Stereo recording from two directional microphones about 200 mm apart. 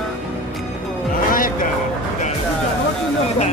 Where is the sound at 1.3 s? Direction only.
45° left (ahead or behind).